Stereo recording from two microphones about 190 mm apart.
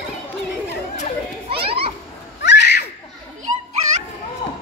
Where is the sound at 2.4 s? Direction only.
65° left (ahead or behind).